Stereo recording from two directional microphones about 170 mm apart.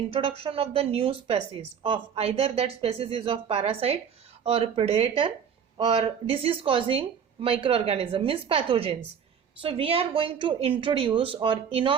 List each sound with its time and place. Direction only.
0.1 s speech: 35° right (ahead or behind)